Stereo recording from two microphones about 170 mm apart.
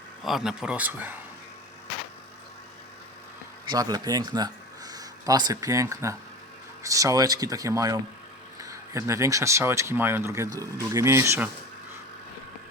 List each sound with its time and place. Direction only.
0.3 s speech: 5° right (ahead or behind)
3.7 s speech: 25° right (ahead or behind)